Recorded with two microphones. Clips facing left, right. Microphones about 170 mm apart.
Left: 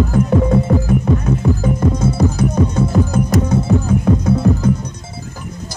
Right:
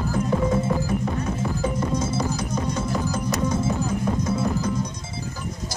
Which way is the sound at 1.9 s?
60° left (ahead or behind).